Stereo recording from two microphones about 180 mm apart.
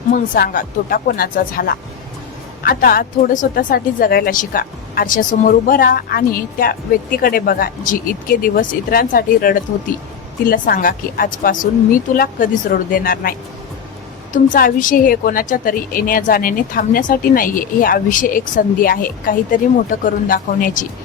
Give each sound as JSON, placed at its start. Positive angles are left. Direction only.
{"t": 0.1, "sound": "a woman's voice", "side_deg": 55}
{"t": 14.3, "sound": "a woman's voice", "side_deg": 45}